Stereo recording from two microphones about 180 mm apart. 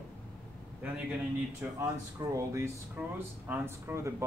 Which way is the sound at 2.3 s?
15° right (ahead or behind).